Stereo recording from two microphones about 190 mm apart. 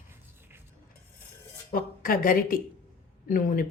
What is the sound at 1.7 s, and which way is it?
A woman's voice, 50° left (ahead or behind).